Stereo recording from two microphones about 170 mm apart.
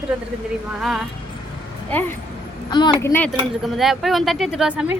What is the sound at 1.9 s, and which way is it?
Speech, 10° left (ahead or behind).